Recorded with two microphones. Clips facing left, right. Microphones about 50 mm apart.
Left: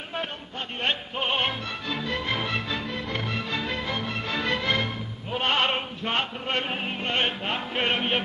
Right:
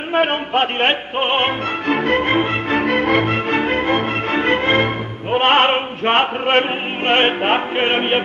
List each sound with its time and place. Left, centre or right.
0.1 s music: right
2.8 s music: right